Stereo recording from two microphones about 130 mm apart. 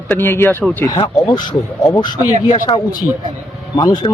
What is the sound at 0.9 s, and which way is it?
Speech, 35° left (ahead or behind).